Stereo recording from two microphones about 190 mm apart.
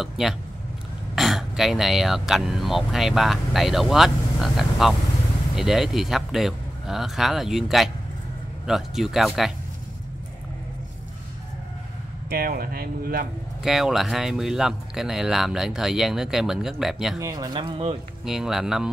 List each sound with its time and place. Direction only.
0.0 s speech: centre (ahead or behind)
12.3 s speech: 50° right (ahead or behind)
13.6 s speech: centre (ahead or behind)
17.2 s speech: 20° right (ahead or behind)
18.2 s speech: 5° right (ahead or behind)